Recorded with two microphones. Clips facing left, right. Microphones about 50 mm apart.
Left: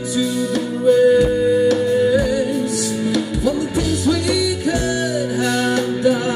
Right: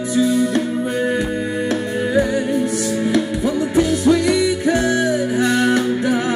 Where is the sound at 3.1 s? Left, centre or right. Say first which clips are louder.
Even; right.